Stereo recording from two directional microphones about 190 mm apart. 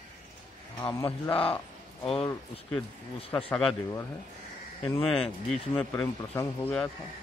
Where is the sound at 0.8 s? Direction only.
15° left (ahead or behind).